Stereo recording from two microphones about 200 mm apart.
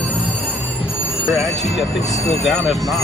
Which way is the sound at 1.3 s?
Centre (ahead or behind).